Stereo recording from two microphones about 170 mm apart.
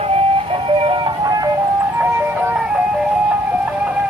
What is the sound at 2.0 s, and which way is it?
Music, 10° right (ahead or behind).